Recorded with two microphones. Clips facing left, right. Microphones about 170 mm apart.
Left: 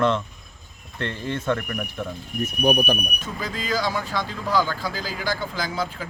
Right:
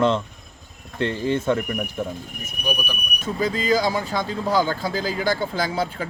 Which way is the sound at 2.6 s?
55° left (ahead or behind).